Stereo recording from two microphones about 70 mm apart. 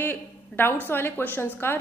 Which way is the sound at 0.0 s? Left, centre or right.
Left.